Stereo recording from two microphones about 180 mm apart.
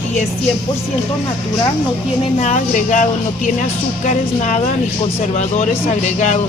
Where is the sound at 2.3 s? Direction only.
40° left (ahead or behind).